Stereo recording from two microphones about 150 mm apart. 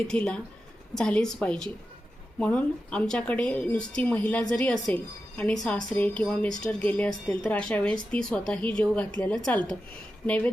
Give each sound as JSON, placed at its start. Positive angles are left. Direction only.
{"t": 0.1, "sound": "a woman's voice", "side_deg": 5}